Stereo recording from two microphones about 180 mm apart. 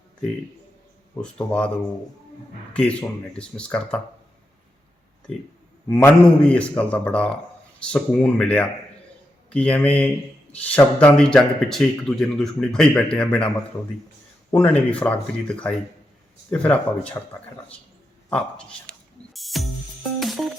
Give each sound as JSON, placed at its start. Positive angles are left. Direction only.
{"t": 1.2, "sound": "a man's voice", "side_deg": 5}
{"t": 2.7, "sound": "speech", "side_deg": 5}
{"t": 5.9, "sound": "a man's voice", "side_deg": 5}
{"t": 14.5, "sound": "a man's voice", "side_deg": 5}
{"t": 18.3, "sound": "a sound", "side_deg": 5}
{"t": 20.1, "sound": "music", "side_deg": 0}